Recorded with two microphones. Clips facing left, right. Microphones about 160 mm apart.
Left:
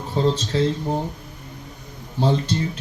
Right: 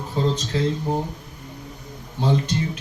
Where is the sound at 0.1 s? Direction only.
30° left (ahead or behind).